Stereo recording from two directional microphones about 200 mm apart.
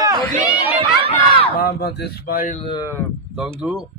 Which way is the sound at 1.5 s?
50° left (ahead or behind).